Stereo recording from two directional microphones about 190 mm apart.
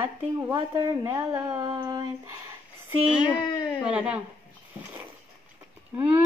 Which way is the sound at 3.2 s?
25° left (ahead or behind).